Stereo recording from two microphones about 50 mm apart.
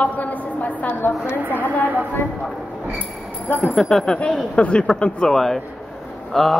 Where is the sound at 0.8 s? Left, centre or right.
Left.